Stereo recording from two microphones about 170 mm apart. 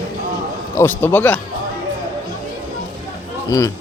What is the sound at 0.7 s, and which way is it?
Speech, 15° left (ahead or behind).